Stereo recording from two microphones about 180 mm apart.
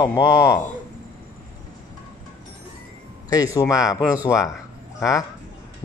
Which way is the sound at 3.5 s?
20° left (ahead or behind).